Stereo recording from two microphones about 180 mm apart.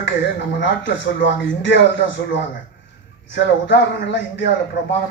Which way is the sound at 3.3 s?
80° left.